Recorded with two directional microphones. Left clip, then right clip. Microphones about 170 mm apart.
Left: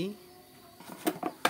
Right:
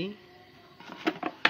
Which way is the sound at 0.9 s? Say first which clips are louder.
Right 3 dB; 5° left (ahead or behind).